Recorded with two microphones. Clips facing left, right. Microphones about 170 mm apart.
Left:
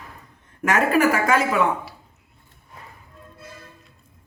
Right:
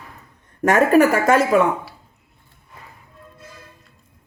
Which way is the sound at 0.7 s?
45° right (ahead or behind).